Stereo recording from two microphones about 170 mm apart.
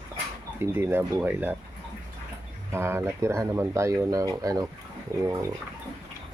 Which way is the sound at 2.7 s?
15° right (ahead or behind).